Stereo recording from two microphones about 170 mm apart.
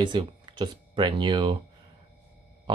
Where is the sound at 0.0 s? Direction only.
25° right (ahead or behind).